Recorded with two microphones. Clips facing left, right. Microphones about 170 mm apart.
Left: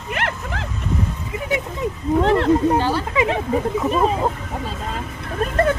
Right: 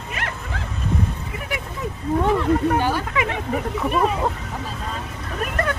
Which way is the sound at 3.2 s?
30° left (ahead or behind).